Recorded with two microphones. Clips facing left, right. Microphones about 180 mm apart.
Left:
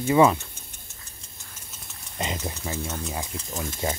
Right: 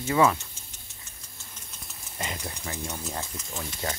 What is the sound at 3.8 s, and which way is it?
Speech, 25° left (ahead or behind).